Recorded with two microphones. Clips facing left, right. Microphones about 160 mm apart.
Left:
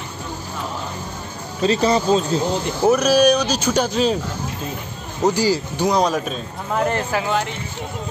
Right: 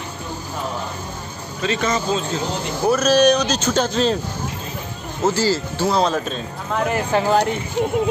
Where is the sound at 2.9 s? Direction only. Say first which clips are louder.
Even; 10° left (ahead or behind).